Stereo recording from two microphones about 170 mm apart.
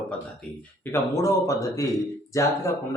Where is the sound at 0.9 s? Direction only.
20° left (ahead or behind).